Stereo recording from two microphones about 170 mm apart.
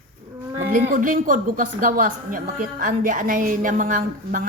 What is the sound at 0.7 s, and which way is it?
A woman's voice, 50° right (ahead or behind).